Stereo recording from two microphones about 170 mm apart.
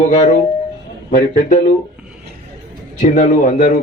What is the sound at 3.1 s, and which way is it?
Speech, 45° left (ahead or behind).